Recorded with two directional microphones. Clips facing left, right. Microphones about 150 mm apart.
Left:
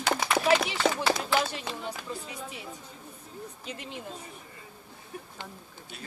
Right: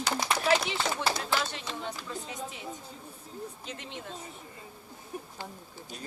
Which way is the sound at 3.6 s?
10° left (ahead or behind).